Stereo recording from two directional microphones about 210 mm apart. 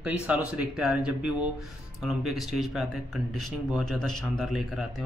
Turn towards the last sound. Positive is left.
turn(degrees=0)  # may be behind; listen again after turning